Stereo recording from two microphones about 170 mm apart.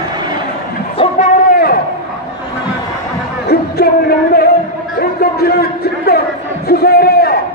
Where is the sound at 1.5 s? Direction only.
60° left (ahead or behind).